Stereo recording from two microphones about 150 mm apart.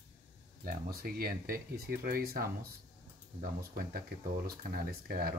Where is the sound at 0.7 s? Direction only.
85° right.